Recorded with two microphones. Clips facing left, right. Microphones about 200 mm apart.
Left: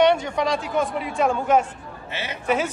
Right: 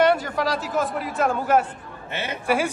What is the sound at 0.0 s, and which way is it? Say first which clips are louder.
A man's voice: left 1 dB; 5° right (ahead or behind).